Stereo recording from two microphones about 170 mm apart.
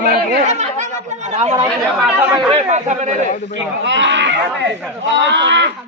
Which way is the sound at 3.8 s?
90° right.